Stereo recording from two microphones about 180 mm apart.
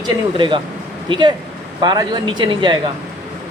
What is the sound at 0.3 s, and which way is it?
Speech, 25° right (ahead or behind).